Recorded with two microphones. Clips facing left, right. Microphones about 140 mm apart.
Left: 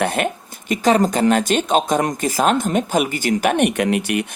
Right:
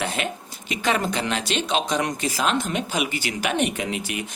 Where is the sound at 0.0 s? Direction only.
55° left (ahead or behind).